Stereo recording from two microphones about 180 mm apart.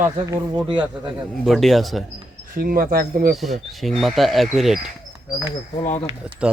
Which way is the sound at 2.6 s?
55° right (ahead or behind).